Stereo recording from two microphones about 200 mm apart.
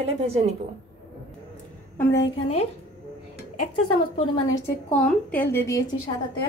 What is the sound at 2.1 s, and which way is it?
Speech, 65° left (ahead or behind).